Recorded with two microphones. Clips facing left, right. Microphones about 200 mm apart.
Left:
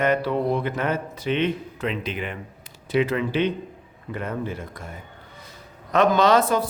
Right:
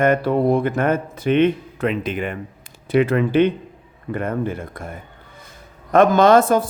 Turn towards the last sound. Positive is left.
turn(degrees=-50)  # may be behind; listen again after turning